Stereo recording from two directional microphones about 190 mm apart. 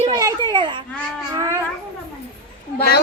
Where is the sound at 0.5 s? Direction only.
25° right (ahead or behind).